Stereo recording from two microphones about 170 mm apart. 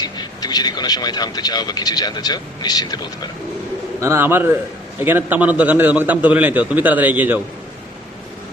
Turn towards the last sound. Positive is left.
turn(degrees=-10)  # may be behind; listen again after turning